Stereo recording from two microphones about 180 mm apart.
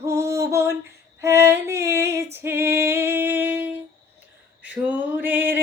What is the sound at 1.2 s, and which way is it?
Female singing, 15° right (ahead or behind).